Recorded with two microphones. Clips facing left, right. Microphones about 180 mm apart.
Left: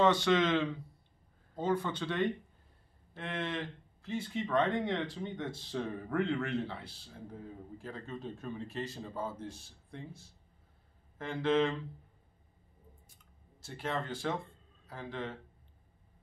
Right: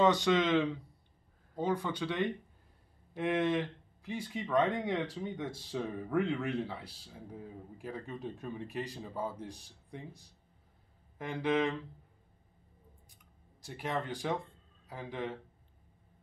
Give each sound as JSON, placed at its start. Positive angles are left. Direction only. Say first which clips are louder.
{"t": 0.0, "sound": "speech", "louder": "even", "side_deg": -15}
{"t": 13.1, "sound": "a sound", "louder": "even", "side_deg": -15}
{"t": 14.9, "sound": "speech", "louder": "right 1 dB", "side_deg": -15}